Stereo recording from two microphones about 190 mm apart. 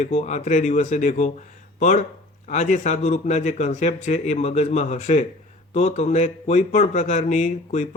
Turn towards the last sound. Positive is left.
turn(degrees=35)  # may be behind; listen again after turning